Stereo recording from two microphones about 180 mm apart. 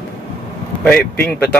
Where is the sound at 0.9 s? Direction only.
10° left (ahead or behind).